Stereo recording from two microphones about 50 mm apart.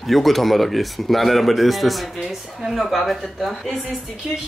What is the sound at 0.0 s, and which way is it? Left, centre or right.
Speech, centre.